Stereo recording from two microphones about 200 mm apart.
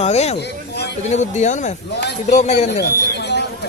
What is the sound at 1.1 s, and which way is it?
Speech, 35° left (ahead or behind).